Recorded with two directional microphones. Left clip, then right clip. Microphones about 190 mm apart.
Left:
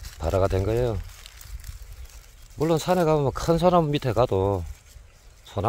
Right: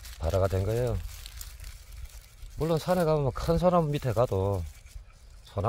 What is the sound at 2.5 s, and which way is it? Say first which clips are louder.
Speech: left 5 dB; 50° left (ahead or behind).